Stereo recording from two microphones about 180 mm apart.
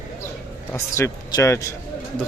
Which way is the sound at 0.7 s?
15° left (ahead or behind).